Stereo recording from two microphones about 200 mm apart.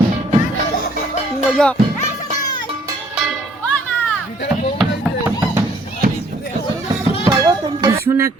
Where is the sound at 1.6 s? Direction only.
5° left (ahead or behind).